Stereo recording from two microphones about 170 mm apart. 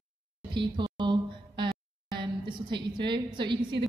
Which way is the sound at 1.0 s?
25° right (ahead or behind).